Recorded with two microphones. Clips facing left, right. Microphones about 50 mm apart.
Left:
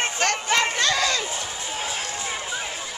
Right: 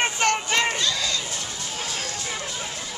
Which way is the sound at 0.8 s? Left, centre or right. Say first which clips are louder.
Left 4 dB; left.